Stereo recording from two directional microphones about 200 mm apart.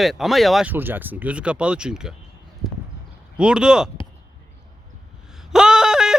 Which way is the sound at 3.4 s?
5° right (ahead or behind).